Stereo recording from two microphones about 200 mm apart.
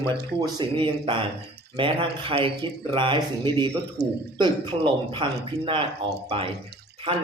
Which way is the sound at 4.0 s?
55° right (ahead or behind).